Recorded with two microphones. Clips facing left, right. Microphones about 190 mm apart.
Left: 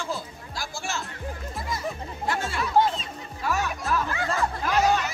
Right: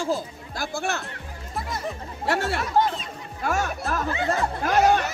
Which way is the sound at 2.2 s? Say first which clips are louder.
Right 4 dB; 65° right (ahead or behind).